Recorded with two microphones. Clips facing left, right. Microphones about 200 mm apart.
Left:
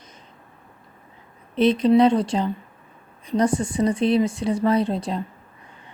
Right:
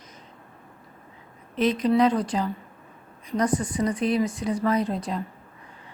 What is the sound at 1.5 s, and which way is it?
Speech, 30° left (ahead or behind).